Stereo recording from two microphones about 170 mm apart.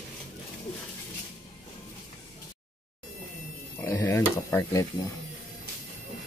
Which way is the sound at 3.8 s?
15° left (ahead or behind).